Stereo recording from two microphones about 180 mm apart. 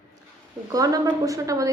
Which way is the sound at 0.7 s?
20° right (ahead or behind).